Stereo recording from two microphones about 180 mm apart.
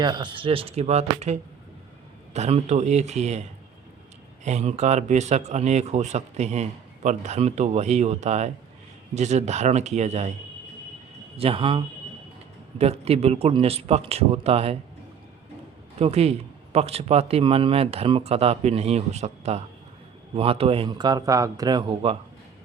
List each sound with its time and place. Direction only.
0.0 s speech: 25° right (ahead or behind)
4.4 s speech: 40° right (ahead or behind)
11.3 s a man's voice: 30° right (ahead or behind)
12.8 s speech: 35° right (ahead or behind)
16.0 s a man's voice: 35° right (ahead or behind)